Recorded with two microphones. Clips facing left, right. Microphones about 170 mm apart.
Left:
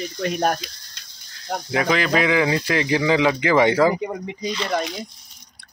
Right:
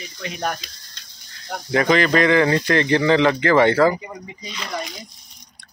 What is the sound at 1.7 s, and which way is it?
Speech, 5° left (ahead or behind).